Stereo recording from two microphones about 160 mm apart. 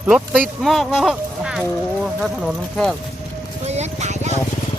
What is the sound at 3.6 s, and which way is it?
Music, 45° right (ahead or behind).